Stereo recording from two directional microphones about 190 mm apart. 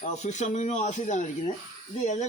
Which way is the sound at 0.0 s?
40° left (ahead or behind).